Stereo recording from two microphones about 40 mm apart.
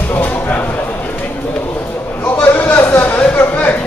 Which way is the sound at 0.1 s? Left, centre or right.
Left.